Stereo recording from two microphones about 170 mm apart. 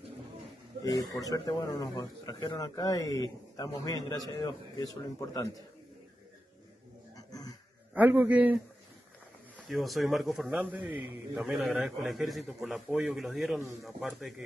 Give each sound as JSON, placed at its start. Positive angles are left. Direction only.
{"t": 0.8, "sound": "speech", "side_deg": 20}
{"t": 7.2, "sound": "a sound", "side_deg": 20}
{"t": 7.9, "sound": "a man's voice", "side_deg": -10}
{"t": 9.6, "sound": "a man's voice", "side_deg": 0}